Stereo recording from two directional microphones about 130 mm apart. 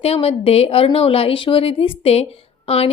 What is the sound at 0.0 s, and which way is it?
A woman's voice, 50° left (ahead or behind).